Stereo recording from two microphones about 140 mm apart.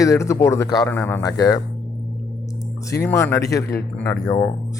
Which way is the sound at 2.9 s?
20° left (ahead or behind).